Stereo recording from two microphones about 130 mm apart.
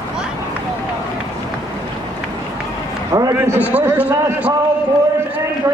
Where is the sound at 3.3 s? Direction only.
20° right (ahead or behind).